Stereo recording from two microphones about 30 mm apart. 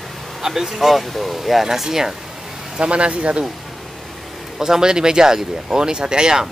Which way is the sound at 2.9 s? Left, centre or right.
Right.